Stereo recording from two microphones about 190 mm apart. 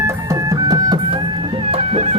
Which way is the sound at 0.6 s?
20° right (ahead or behind).